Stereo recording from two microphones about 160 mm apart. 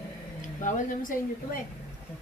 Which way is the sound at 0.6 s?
55° left (ahead or behind).